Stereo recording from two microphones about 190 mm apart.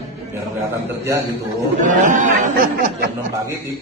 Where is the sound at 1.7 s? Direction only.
40° right (ahead or behind).